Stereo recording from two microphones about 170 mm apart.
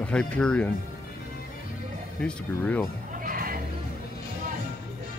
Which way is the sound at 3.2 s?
55° right (ahead or behind).